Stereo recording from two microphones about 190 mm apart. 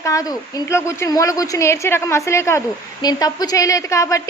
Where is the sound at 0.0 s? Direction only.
15° left (ahead or behind).